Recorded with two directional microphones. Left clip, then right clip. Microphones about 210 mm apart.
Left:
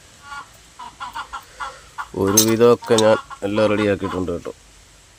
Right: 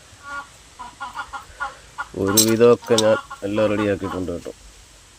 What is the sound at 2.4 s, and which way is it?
Speech, 5° left (ahead or behind).